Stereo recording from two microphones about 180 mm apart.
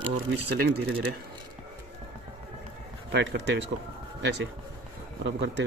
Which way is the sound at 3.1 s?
70° right (ahead or behind).